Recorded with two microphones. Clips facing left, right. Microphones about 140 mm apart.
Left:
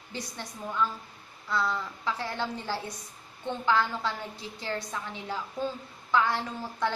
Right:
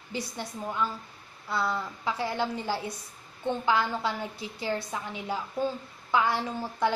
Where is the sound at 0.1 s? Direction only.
10° right (ahead or behind).